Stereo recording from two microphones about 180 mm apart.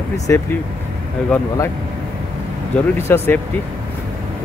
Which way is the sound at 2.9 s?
15° left (ahead or behind).